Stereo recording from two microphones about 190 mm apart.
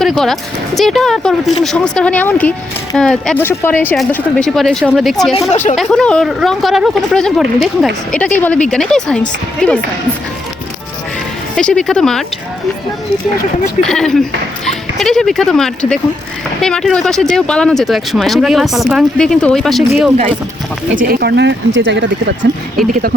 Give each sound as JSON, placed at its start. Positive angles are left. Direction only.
{"t": 0.0, "sound": "a sound", "side_deg": 0}
{"t": 0.8, "sound": "speech", "side_deg": 0}
{"t": 5.5, "sound": "speech", "side_deg": 40}
{"t": 5.7, "sound": "speech", "side_deg": 0}
{"t": 11.5, "sound": "speech", "side_deg": 5}
{"t": 13.8, "sound": "speech", "side_deg": 5}
{"t": 21.0, "sound": "speech", "side_deg": -50}
{"t": 22.8, "sound": "speech", "side_deg": 0}